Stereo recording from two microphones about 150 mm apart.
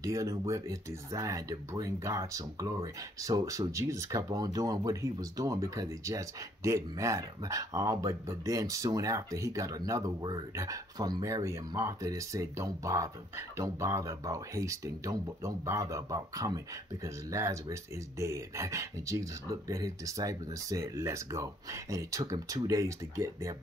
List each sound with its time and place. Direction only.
0.0 s speech: 20° right (ahead or behind)